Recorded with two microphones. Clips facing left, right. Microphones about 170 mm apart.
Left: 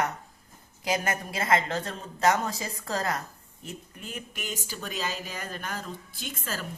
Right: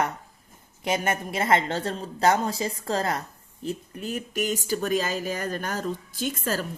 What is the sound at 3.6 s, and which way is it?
Speech, 40° right (ahead or behind).